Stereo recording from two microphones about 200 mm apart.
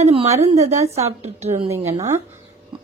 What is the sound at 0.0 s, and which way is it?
Speech, 30° right (ahead or behind).